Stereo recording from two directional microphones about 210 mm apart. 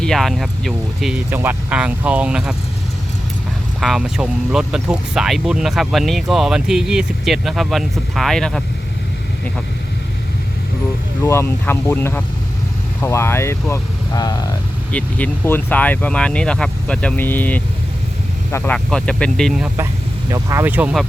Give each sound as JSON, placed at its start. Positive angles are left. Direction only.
{"t": 0.0, "sound": "speech", "side_deg": 0}
{"t": 1.3, "sound": "speech", "side_deg": -10}
{"t": 3.8, "sound": "speech", "side_deg": 0}
{"t": 11.2, "sound": "speech", "side_deg": 10}